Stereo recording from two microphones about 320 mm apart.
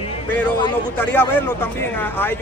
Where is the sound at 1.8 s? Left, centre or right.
Centre.